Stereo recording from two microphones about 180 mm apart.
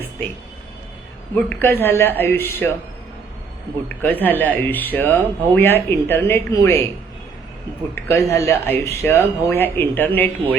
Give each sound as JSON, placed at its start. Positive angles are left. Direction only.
{"t": 1.4, "sound": "speech", "side_deg": 10}
{"t": 3.8, "sound": "speech", "side_deg": 10}
{"t": 7.9, "sound": "speech", "side_deg": 15}